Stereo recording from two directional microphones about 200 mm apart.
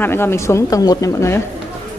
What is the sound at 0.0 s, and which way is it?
A woman's voice, 10° left (ahead or behind).